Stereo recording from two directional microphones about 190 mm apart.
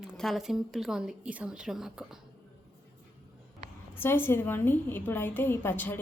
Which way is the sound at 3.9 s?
10° left (ahead or behind).